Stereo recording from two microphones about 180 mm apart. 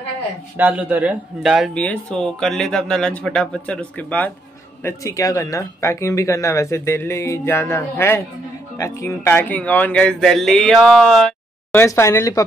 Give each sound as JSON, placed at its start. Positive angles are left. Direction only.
{"t": 0.6, "sound": "speech", "side_deg": -10}
{"t": 11.7, "sound": "speech", "side_deg": 15}